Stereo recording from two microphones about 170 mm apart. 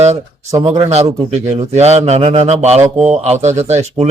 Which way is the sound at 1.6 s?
40° right (ahead or behind).